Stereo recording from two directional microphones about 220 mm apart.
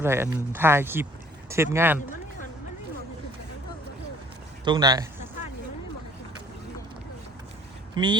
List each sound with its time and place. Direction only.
0.0 s speech: 10° right (ahead or behind)
4.6 s speech: 20° right (ahead or behind)
8.0 s speech: 20° right (ahead or behind)